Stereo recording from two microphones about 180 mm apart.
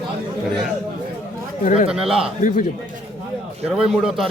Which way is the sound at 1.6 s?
45° left (ahead or behind).